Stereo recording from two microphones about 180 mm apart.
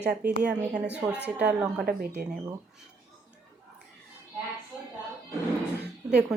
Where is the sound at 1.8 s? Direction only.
55° right (ahead or behind).